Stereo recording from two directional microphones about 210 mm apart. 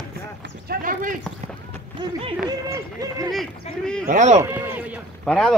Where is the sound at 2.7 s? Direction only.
15° right (ahead or behind).